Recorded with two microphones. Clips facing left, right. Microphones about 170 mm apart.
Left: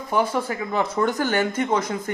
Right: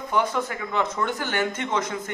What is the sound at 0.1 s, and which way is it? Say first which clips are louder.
Speech: left 2 dB; 30° left (ahead or behind).